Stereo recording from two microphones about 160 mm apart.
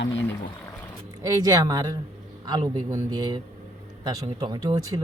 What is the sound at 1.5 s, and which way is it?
Speech, 25° right (ahead or behind).